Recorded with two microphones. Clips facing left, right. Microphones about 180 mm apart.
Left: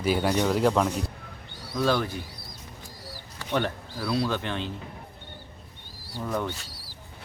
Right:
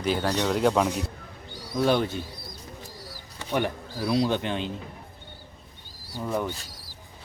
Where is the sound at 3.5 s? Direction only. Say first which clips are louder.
Right 1 dB; 15° right (ahead or behind).